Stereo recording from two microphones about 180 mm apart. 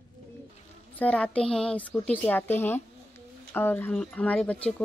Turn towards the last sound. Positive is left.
turn(degrees=5)  # may be behind; listen again after turning